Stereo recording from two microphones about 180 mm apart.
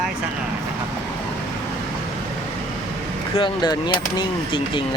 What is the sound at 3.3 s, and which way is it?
Speech, 25° left (ahead or behind).